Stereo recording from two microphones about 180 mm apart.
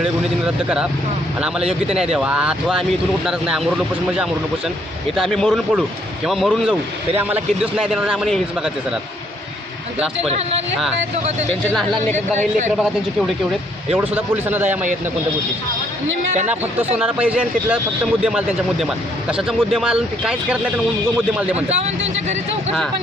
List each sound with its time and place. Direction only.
0.0 s a man's voice: 5° right (ahead or behind)
11.7 s a man's voice: 5° left (ahead or behind)
17.0 s a man's voice: 5° right (ahead or behind)
21.7 s speech: 35° right (ahead or behind)